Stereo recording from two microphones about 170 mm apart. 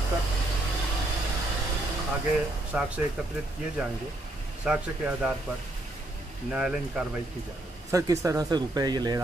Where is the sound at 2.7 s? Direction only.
5° right (ahead or behind).